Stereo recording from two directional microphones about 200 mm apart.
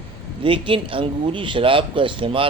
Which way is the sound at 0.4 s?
25° right (ahead or behind).